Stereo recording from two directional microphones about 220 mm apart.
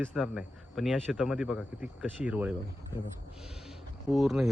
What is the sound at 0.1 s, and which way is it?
A man's voice, centre (ahead or behind).